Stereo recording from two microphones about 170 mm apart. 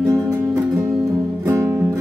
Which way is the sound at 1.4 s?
20° right (ahead or behind).